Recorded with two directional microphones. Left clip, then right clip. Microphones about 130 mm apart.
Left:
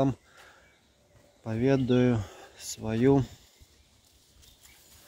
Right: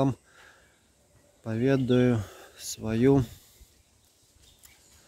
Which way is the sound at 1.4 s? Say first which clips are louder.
Even; 35° right (ahead or behind).